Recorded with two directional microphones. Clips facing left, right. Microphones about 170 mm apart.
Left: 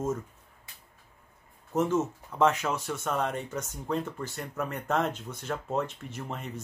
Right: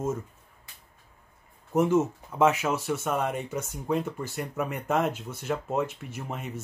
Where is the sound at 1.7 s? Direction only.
10° right (ahead or behind).